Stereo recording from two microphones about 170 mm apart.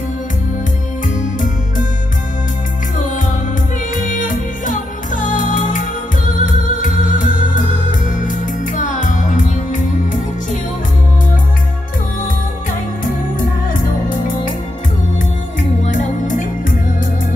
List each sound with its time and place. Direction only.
3.9 s music: 50° left (ahead or behind)
15.8 s music: 45° left (ahead or behind)